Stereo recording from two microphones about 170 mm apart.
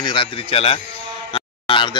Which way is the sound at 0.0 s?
30° left (ahead or behind).